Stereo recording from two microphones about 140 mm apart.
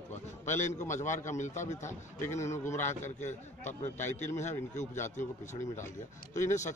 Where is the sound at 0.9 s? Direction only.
60° left (ahead or behind).